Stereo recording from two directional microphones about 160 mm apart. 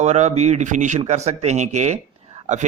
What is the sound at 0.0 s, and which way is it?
Speech, 45° right (ahead or behind).